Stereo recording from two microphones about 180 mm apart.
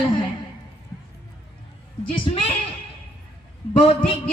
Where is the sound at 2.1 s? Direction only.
30° left (ahead or behind).